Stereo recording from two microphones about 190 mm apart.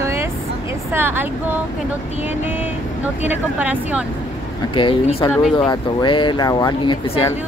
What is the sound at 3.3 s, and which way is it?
Speech, 10° right (ahead or behind).